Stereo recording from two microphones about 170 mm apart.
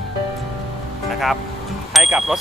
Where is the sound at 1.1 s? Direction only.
Centre (ahead or behind).